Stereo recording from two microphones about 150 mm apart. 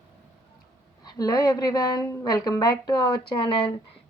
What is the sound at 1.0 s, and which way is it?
A woman's voice, 25° left (ahead or behind).